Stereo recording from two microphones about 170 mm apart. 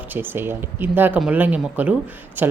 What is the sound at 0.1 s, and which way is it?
Speech, 10° right (ahead or behind).